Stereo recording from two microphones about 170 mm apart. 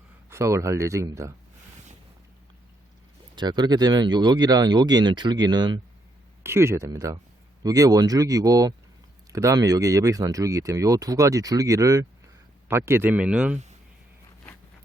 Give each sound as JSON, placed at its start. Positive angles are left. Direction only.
{"t": 0.3, "sound": "speech", "side_deg": -15}
{"t": 3.3, "sound": "speech", "side_deg": -25}